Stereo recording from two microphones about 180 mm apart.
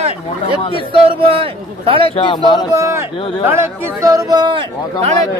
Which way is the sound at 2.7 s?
15° right (ahead or behind).